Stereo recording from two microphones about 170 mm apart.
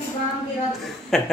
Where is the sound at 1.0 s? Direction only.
Centre (ahead or behind).